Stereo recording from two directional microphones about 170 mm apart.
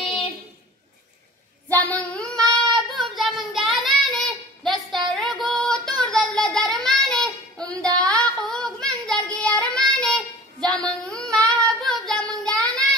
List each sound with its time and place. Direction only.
1.7 s child singing: 10° left (ahead or behind)
7.6 s music: 20° right (ahead or behind)
7.9 s child singing: 5° left (ahead or behind)